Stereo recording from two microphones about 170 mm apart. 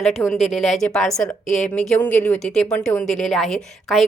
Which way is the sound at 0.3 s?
Centre (ahead or behind).